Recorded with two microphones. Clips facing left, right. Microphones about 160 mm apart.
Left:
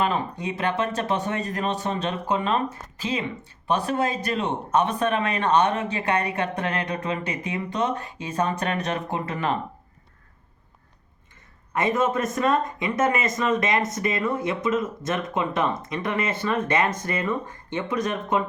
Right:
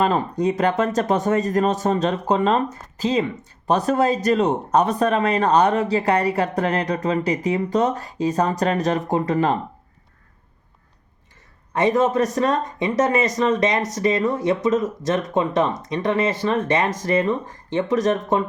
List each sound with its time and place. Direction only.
0.0 s speech: 40° right (ahead or behind)
11.9 s speech: 35° right (ahead or behind)
14.3 s speech: 40° right (ahead or behind)